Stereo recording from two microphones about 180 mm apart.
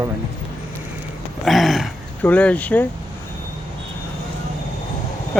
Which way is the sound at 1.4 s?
Centre (ahead or behind).